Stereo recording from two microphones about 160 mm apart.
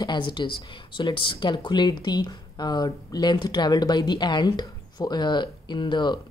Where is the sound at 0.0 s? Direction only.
30° left (ahead or behind).